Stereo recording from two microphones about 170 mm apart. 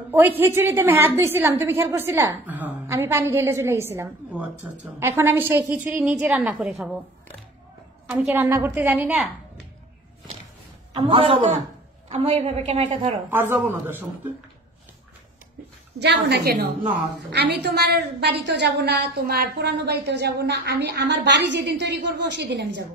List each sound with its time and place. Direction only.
0.4 s a woman's voice: 15° right (ahead or behind)
8.3 s a woman's voice: 15° right (ahead or behind)
10.9 s a woman's voice: 30° right (ahead or behind)
13.3 s a woman's voice: 15° right (ahead or behind)
16.0 s a woman's voice: 80° right